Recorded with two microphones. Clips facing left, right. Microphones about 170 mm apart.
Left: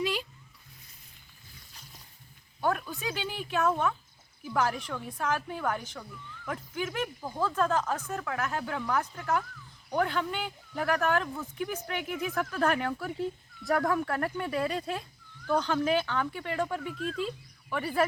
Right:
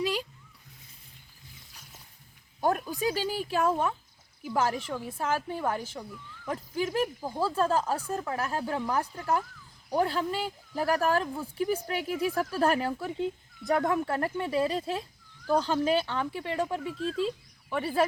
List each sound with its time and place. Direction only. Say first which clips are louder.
0.0 s a sound: right 1 dB; 40° right (ahead or behind)
2.6 s a woman's voice: right 3 dB; 40° right (ahead or behind)
12.9 s a woman's voice: right 2 dB; 20° right (ahead or behind)